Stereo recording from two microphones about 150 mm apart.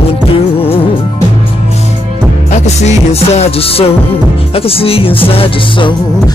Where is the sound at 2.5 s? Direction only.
45° left (ahead or behind).